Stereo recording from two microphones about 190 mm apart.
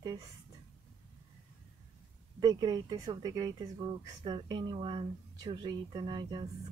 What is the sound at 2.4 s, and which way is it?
A woman's voice, 20° right (ahead or behind).